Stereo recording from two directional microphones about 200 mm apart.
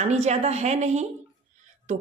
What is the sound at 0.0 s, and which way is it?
A woman's voice, 35° right (ahead or behind).